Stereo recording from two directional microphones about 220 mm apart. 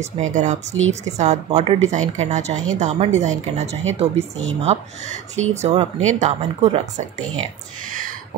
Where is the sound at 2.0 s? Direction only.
65° right (ahead or behind).